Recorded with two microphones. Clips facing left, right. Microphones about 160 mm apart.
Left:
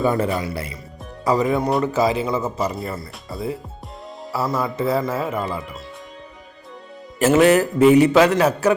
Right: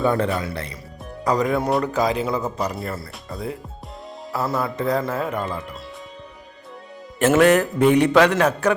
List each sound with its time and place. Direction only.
0.0 s speech: centre (ahead or behind)
7.2 s speech: 5° left (ahead or behind)